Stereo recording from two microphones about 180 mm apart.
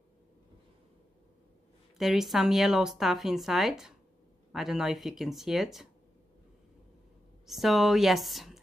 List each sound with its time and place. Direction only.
2.0 s speech: centre (ahead or behind)
7.4 s speech: centre (ahead or behind)